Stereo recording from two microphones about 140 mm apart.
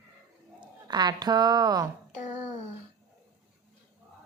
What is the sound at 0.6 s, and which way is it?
A woman's voice, 30° right (ahead or behind).